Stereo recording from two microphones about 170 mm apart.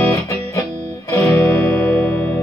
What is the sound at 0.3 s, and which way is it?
Music, 15° left (ahead or behind).